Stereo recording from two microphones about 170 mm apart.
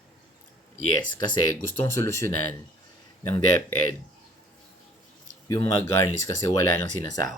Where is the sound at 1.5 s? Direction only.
15° left (ahead or behind).